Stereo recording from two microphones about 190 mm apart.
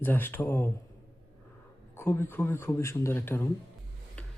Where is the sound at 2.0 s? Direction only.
10° left (ahead or behind).